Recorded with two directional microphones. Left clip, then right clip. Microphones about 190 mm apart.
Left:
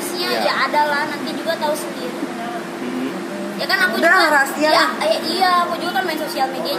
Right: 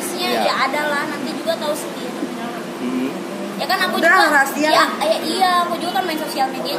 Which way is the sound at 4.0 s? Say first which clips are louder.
Right 2 dB; 15° right (ahead or behind).